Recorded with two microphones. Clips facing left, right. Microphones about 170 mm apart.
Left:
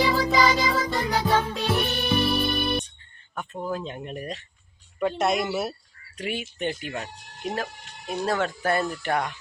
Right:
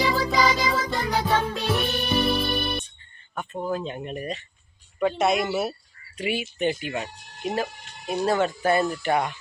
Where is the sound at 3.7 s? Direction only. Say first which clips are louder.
Right 3 dB; 5° right (ahead or behind).